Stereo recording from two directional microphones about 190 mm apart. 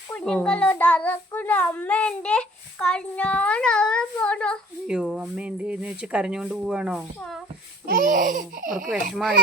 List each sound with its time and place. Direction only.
0.1 s a child's voice: 5° left (ahead or behind)
7.9 s speech: 50° right (ahead or behind)